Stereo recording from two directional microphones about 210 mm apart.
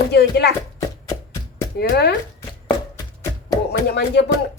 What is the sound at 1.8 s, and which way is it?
Speech, 50° left (ahead or behind).